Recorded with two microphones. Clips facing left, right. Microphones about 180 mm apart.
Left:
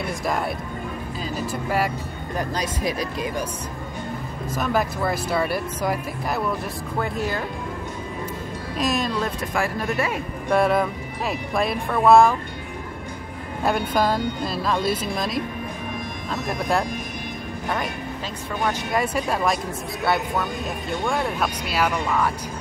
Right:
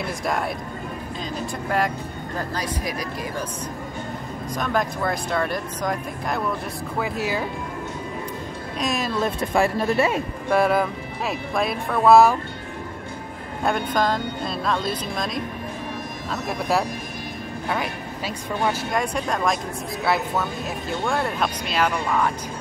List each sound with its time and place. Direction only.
2.3 s speech: 20° left (ahead or behind)
4.6 s speech: 5° left (ahead or behind)
7.0 s speech: 5° right (ahead or behind)
8.7 s speech: centre (ahead or behind)
9.4 s speech: 25° right (ahead or behind)
10.5 s speech: centre (ahead or behind)
13.7 s speech: 5° left (ahead or behind)
18.9 s speech: 5° left (ahead or behind)